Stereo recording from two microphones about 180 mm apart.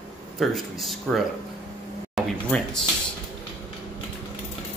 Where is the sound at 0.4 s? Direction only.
Centre (ahead or behind).